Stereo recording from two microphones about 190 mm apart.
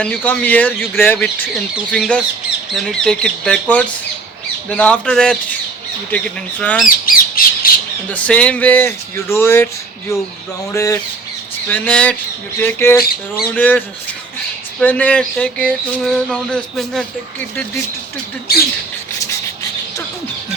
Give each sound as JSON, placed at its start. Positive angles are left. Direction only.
{"t": 0.0, "sound": "speech", "side_deg": 5}
{"t": 1.9, "sound": "a sound", "side_deg": 5}
{"t": 6.1, "sound": "speech", "side_deg": 5}
{"t": 6.8, "sound": "squawk", "side_deg": 50}
{"t": 8.1, "sound": "speech", "side_deg": 5}
{"t": 10.7, "sound": "speech", "side_deg": 15}
{"t": 14.8, "sound": "a sound", "side_deg": 5}